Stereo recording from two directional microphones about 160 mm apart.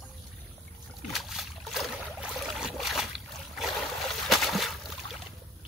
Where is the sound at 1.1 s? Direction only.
Centre (ahead or behind).